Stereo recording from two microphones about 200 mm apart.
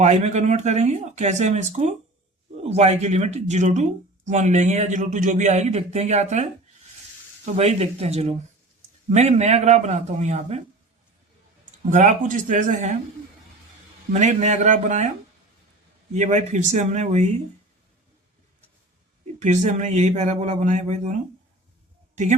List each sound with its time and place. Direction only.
0.0 s speech: 35° right (ahead or behind)
7.5 s speech: 30° right (ahead or behind)
11.9 s speech: 40° right (ahead or behind)
14.1 s speech: 35° right (ahead or behind)
16.1 s speech: 35° right (ahead or behind)
19.4 s speech: 35° right (ahead or behind)